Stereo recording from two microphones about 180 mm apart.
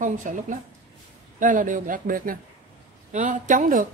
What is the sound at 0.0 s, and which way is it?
Speech, 45° right (ahead or behind).